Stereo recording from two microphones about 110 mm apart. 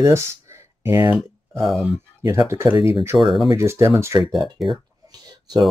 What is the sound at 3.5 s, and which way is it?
Speech, 25° right (ahead or behind).